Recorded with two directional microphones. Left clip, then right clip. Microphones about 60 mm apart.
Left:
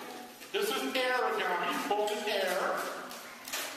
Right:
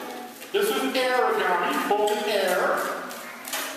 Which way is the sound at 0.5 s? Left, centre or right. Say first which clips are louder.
Right 8 dB; left.